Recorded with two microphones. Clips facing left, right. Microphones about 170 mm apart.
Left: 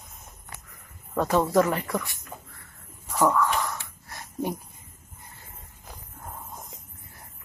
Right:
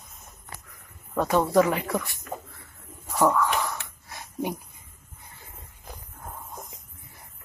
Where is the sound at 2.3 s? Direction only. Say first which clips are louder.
Right 11 dB; 55° right (ahead or behind).